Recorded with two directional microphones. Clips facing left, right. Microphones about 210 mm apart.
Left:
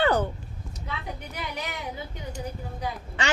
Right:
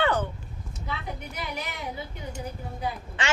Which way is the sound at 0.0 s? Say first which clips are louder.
Left 2 dB; 40° left (ahead or behind).